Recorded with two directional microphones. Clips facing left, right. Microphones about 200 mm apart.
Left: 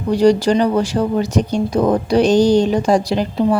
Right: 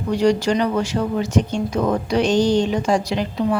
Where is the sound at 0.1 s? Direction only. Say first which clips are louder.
Left 5 dB; 35° left (ahead or behind).